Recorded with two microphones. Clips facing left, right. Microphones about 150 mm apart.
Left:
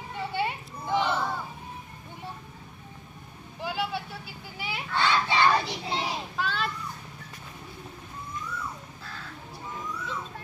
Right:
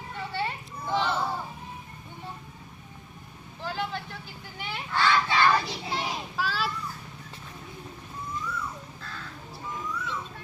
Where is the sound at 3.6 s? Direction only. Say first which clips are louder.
Left 2 dB; 10° left (ahead or behind).